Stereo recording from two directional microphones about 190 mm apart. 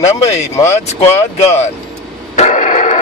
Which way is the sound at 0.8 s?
35° left (ahead or behind).